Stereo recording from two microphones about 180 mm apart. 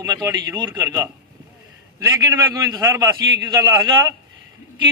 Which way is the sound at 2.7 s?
20° right (ahead or behind).